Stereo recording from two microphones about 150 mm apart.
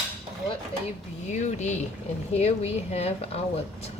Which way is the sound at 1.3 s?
50° left (ahead or behind).